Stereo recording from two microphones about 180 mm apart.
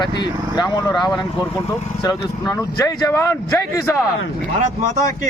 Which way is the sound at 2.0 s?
20° left (ahead or behind).